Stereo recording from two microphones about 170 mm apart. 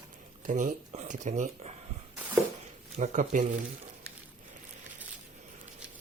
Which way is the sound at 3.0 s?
45° right (ahead or behind).